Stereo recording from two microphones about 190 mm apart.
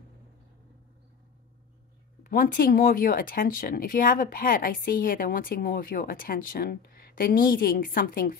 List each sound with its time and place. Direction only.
2.2 s speech: 50° left (ahead or behind)